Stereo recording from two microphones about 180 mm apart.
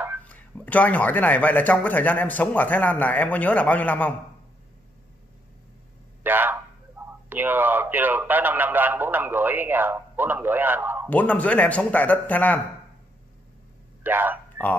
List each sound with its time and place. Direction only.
0.3 s speech: 10° left (ahead or behind)
6.2 s a sound: 10° right (ahead or behind)
7.2 s a man's voice: 10° right (ahead or behind)
11.1 s speech: 10° left (ahead or behind)
14.0 s a man's voice: 10° right (ahead or behind)